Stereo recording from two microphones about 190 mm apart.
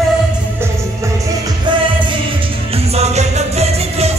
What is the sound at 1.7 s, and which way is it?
Music, 25° right (ahead or behind).